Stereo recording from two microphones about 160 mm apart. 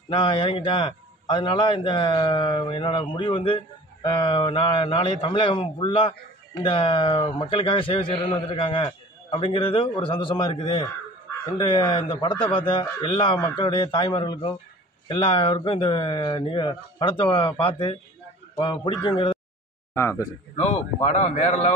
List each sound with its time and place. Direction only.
0.1 s a man's voice: 30° left (ahead or behind)
19.9 s speech: 15° left (ahead or behind)
20.5 s a man's voice: 40° left (ahead or behind)